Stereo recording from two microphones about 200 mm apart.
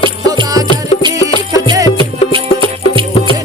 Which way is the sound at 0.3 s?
20° right (ahead or behind).